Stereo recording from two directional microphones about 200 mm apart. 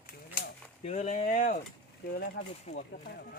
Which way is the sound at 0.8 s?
35° left (ahead or behind).